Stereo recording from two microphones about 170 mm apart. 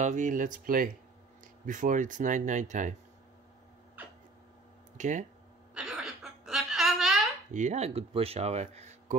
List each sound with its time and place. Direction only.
0.0 s speech: 45° right (ahead or behind)
4.9 s speech: 45° right (ahead or behind)
5.8 s wail: 5° right (ahead or behind)
7.5 s speech: 45° right (ahead or behind)